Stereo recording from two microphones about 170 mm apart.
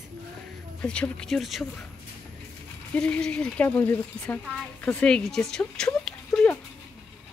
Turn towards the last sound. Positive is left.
turn(degrees=5)  # may be behind; listen again after turning